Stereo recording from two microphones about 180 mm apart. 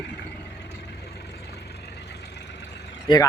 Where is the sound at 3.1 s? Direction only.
25° left (ahead or behind).